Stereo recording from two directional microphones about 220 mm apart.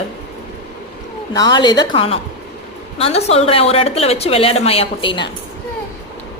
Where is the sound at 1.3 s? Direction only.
20° left (ahead or behind).